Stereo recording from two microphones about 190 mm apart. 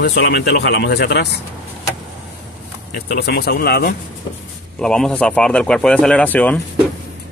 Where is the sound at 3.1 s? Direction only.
55° left (ahead or behind).